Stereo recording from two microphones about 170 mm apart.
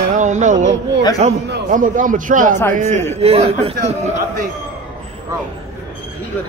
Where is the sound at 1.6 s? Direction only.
50° right (ahead or behind).